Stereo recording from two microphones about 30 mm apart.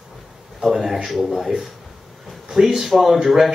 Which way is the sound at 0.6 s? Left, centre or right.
Centre.